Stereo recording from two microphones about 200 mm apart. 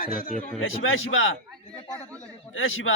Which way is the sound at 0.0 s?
45° left (ahead or behind).